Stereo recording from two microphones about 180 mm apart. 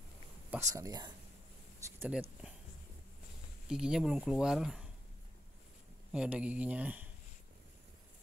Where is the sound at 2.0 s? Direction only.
10° right (ahead or behind).